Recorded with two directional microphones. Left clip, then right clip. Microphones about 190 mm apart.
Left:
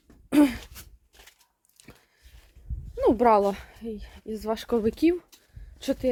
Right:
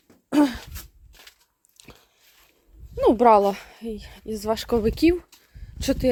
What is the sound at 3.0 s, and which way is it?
Speech, 15° right (ahead or behind).